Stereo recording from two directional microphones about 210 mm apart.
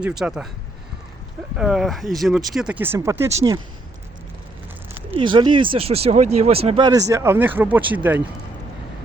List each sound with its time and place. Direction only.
0.0 s speech: 5° right (ahead or behind)
1.5 s speech: 5° right (ahead or behind)
4.9 s speech: 25° right (ahead or behind); by 8.2 s 10° right (ahead or behind)